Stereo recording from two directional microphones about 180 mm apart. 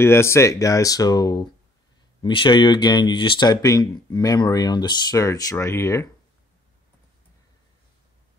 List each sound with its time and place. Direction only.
0.0 s speech: 15° left (ahead or behind)